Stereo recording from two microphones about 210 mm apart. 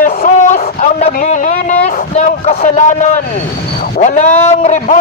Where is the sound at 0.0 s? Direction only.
40° left (ahead or behind).